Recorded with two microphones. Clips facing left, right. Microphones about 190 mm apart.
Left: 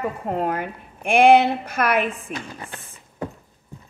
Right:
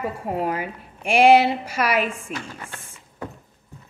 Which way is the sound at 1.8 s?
55° left (ahead or behind).